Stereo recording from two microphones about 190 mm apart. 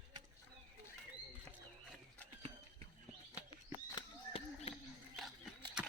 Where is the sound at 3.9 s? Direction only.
30° left (ahead or behind).